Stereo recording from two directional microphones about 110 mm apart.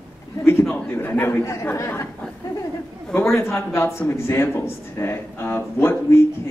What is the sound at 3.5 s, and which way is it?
A man's voice, 20° left (ahead or behind).